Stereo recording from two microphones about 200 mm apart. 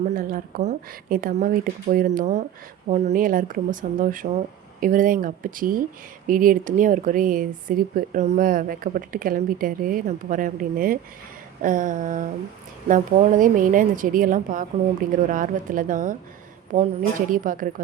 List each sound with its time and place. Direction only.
0.0 s a woman's voice: 45° right (ahead or behind)